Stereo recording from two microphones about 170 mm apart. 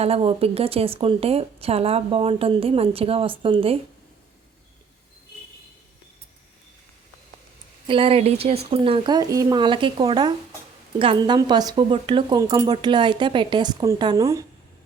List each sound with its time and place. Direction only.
0.0 s speech: 35° right (ahead or behind)
7.9 s speech: 35° right (ahead or behind)